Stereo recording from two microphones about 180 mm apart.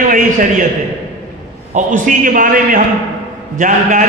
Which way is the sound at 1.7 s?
45° right (ahead or behind).